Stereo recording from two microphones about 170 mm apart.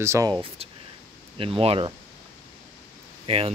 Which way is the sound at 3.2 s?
35° right (ahead or behind).